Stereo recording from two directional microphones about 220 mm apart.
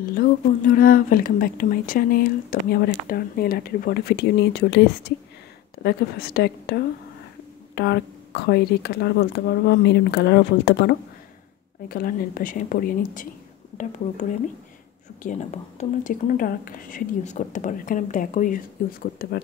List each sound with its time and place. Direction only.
0.1 s speech: 40° left (ahead or behind)
15.2 s speech: 30° left (ahead or behind)